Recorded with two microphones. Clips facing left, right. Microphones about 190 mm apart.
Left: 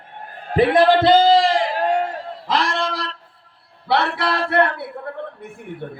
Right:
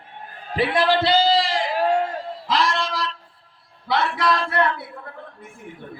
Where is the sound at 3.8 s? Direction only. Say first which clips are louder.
Left 1 dB; 65° left (ahead or behind).